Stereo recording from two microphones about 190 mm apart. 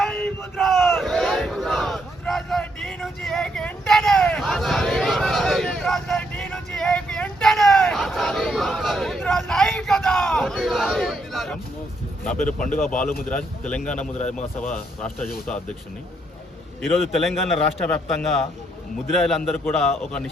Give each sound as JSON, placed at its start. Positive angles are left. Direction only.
{"t": 0.0, "sound": "crowd", "side_deg": 5}
{"t": 12.2, "sound": "a man's voice", "side_deg": 5}
{"t": 14.2, "sound": "speech", "side_deg": 40}
{"t": 14.7, "sound": "a man's voice", "side_deg": 5}
{"t": 17.2, "sound": "a man's voice", "side_deg": 0}